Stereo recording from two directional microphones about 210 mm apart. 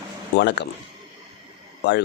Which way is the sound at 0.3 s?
55° left (ahead or behind).